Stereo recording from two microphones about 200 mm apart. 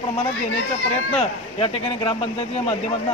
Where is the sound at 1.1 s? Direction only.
30° left (ahead or behind).